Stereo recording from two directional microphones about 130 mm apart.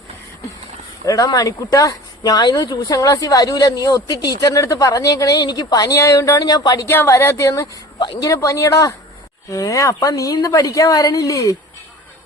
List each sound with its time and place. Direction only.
1.0 s speech: 25° left (ahead or behind)
6.8 s speech: 20° left (ahead or behind)